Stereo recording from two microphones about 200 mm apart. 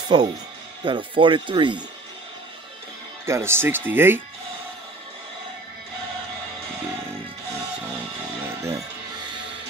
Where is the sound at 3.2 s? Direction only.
15° right (ahead or behind).